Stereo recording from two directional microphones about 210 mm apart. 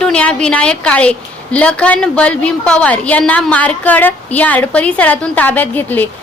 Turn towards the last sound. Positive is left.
turn(degrees=10)  # may be behind; listen again after turning